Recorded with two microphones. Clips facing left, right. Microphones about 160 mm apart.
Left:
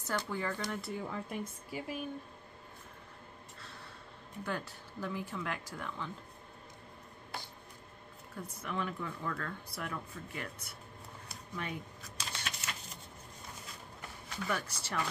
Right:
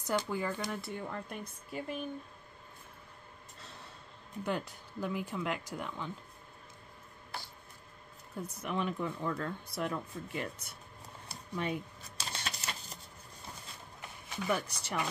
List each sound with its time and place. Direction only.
0.0 s speech: 10° right (ahead or behind); by 2.0 s 5° left (ahead or behind)
4.5 s speech: 15° right (ahead or behind)
8.4 s speech: 20° right (ahead or behind)
11.2 s a sound: 20° right (ahead or behind)
12.2 s typewriter: 35° right (ahead or behind)
14.3 s speech: 20° right (ahead or behind)